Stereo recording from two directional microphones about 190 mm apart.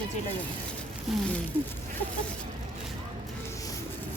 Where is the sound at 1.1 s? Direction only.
Centre (ahead or behind).